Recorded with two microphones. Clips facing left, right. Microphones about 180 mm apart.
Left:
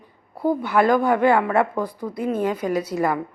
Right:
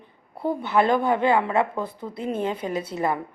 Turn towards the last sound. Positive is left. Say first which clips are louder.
# left 4 dB
turn(degrees=-25)  # may be behind; listen again after turning